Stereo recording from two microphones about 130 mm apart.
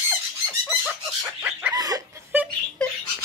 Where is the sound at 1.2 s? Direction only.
10° right (ahead or behind).